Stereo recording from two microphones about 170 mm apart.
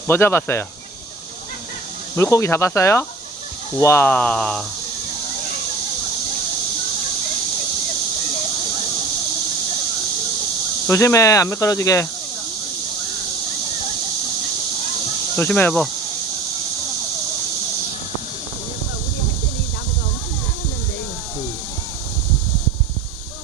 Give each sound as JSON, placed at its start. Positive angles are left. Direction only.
{"t": 0.1, "sound": "speech", "side_deg": 15}
{"t": 2.1, "sound": "speech", "side_deg": 15}
{"t": 10.8, "sound": "speech", "side_deg": 15}
{"t": 15.4, "sound": "speech", "side_deg": 10}